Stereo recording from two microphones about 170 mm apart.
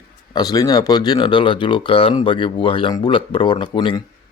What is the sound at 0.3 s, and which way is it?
Speech, 20° left (ahead or behind).